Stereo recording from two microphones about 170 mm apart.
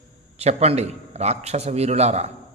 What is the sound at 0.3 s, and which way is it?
A man's voice, 40° right (ahead or behind).